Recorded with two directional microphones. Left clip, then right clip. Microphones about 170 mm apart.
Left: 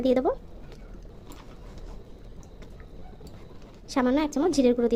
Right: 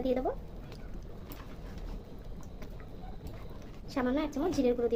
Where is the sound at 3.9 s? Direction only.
55° left (ahead or behind).